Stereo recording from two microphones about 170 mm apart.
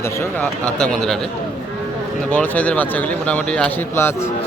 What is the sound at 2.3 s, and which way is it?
Speech, 10° left (ahead or behind).